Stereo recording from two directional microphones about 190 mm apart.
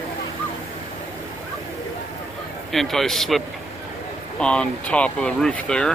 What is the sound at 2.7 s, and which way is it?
Speech, centre (ahead or behind).